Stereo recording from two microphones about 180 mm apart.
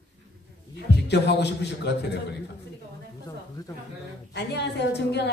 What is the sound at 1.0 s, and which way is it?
A woman's voice, 70° left (ahead or behind).